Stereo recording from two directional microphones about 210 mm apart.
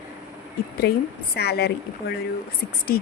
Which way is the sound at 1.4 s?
50° left (ahead or behind).